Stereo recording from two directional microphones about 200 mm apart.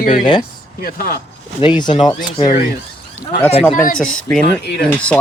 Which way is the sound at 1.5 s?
25° left (ahead or behind).